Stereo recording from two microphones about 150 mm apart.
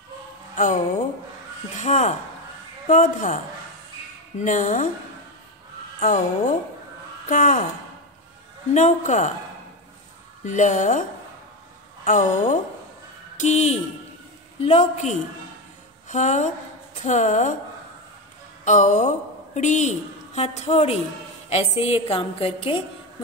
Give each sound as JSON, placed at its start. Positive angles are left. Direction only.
{"t": 1.8, "sound": "a woman's voice", "side_deg": 50}
{"t": 4.4, "sound": "a woman's voice", "side_deg": 55}
{"t": 5.9, "sound": "a woman's voice", "side_deg": 60}
{"t": 8.7, "sound": "a woman's voice", "side_deg": 55}
{"t": 10.4, "sound": "a woman's voice", "side_deg": 55}
{"t": 13.4, "sound": "a woman's voice", "side_deg": 50}
{"t": 18.6, "sound": "a woman's voice", "side_deg": 55}